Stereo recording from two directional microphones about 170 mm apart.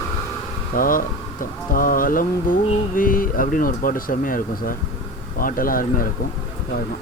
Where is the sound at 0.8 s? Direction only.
55° left (ahead or behind).